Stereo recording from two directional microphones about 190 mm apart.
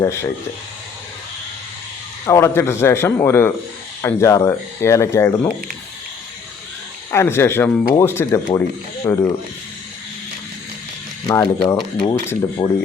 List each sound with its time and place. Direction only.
0.0 s speech: 15° left (ahead or behind)
2.2 s speech: 15° left (ahead or behind)
7.1 s speech: 10° left (ahead or behind)
11.3 s speech: 15° left (ahead or behind)